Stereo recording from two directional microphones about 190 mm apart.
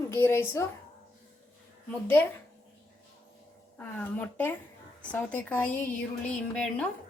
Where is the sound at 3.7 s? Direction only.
10° left (ahead or behind).